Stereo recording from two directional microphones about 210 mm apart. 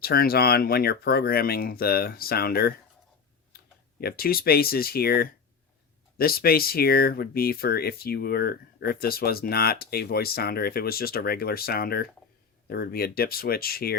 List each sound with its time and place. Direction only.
0.0 s speech: 45° left (ahead or behind)
4.0 s speech: 45° left (ahead or behind)